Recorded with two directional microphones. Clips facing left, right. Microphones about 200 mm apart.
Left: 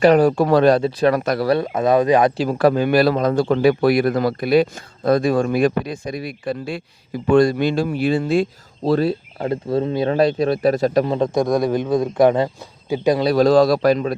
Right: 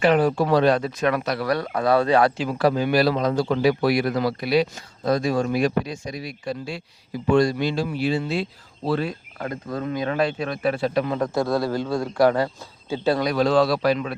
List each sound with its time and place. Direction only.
0.0 s speech: 40° left (ahead or behind)
0.8 s speech: 30° left (ahead or behind)
1.2 s speech: 50° left (ahead or behind)
1.5 s speech: 25° left (ahead or behind)
2.4 s speech: 45° left (ahead or behind)
11.1 s speech: 20° left (ahead or behind)
13.2 s speech: 40° left (ahead or behind)